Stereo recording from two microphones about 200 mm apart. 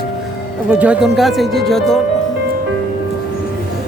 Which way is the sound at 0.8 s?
5° right (ahead or behind).